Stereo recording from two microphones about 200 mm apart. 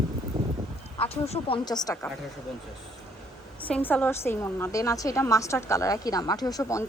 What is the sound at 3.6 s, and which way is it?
A woman's voice, 10° left (ahead or behind).